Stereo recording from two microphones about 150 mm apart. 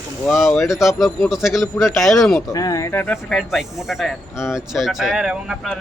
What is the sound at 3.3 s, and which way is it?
A man's voice, centre (ahead or behind).